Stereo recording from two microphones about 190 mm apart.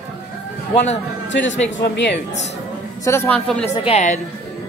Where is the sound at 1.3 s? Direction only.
75° left (ahead or behind).